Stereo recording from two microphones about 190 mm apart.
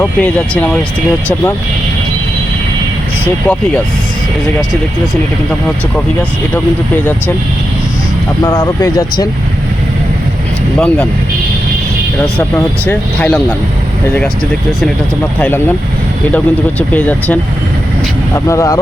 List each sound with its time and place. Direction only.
0.0 s speech: 5° left (ahead or behind)
8.4 s speech: 15° left (ahead or behind)
10.8 s speech: 5° left (ahead or behind)
12.4 s speech: 10° left (ahead or behind)
15.4 s speech: 10° left (ahead or behind)
18.3 s speech: 15° left (ahead or behind)